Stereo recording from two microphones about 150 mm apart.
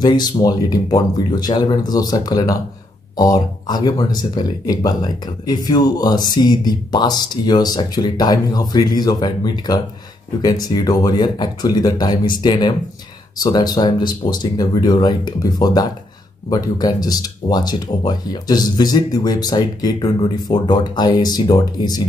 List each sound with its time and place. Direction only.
0.0 s speech: 30° left (ahead or behind)